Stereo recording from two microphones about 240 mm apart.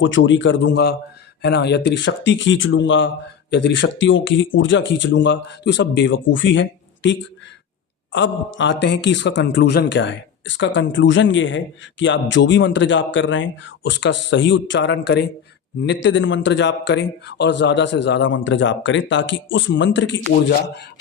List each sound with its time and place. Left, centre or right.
0.0 s speech: left